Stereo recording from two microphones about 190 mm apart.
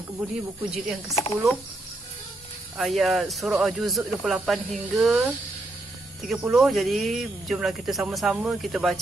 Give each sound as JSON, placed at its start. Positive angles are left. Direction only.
{"t": 0.7, "sound": "speech", "side_deg": 0}
{"t": 1.1, "sound": "speech", "side_deg": 15}
{"t": 2.8, "sound": "speech", "side_deg": 0}